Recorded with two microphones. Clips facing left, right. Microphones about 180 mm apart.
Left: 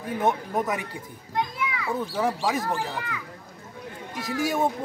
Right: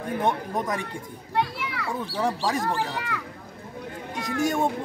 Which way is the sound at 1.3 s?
70° right (ahead or behind).